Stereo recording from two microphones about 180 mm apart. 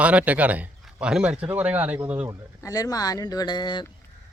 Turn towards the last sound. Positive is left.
turn(degrees=25)  # may be behind; listen again after turning